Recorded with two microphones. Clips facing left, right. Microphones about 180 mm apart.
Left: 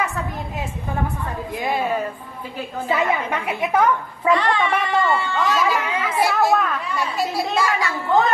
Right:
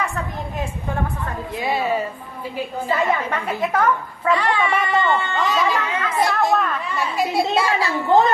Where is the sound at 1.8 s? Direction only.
5° right (ahead or behind).